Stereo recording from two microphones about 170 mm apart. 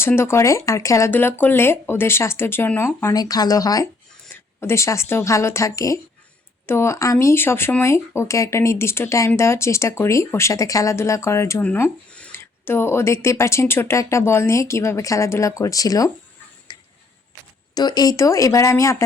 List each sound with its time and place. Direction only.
0.0 s a woman's voice: 15° left (ahead or behind)
16.7 s a sound: 25° left (ahead or behind)
17.7 s speech: 25° left (ahead or behind)